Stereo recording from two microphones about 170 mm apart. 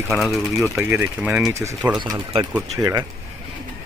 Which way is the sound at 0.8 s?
15° right (ahead or behind).